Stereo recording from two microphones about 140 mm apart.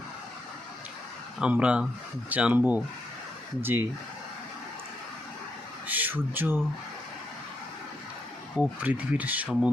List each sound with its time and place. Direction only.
1.4 s speech: 10° right (ahead or behind)
5.9 s speech: 10° right (ahead or behind)
8.8 s speech: 10° right (ahead or behind)